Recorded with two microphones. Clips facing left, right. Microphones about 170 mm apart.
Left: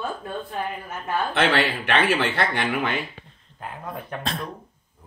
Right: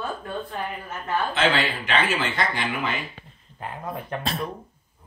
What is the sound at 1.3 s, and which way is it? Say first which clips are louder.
Speech: left 3 dB; 60° left (ahead or behind).